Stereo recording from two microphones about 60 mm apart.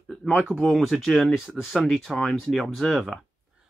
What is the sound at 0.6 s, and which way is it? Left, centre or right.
Speech, centre.